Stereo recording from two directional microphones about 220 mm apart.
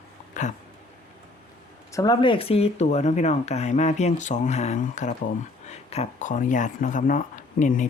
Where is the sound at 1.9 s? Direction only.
15° left (ahead or behind); by 7.9 s 35° left (ahead or behind).